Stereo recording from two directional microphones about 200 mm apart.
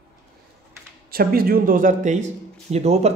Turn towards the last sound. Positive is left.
turn(degrees=-30)  # may be behind; listen again after turning